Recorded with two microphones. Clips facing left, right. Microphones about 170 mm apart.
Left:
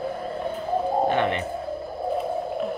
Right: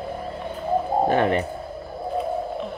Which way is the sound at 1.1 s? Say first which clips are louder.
Right 3 dB; 40° right (ahead or behind).